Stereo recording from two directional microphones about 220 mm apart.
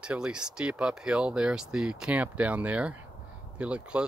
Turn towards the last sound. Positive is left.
turn(degrees=-5)  # may be behind; listen again after turning